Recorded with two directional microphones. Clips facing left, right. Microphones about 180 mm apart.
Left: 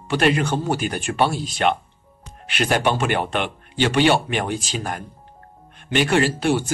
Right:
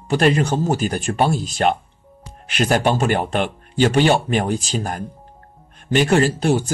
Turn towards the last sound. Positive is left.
turn(degrees=-40)  # may be behind; listen again after turning